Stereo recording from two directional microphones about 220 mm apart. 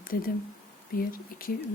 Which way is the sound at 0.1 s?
45° left (ahead or behind).